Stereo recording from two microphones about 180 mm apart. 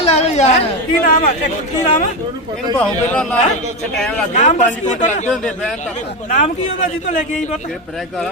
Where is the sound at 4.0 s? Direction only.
5° left (ahead or behind).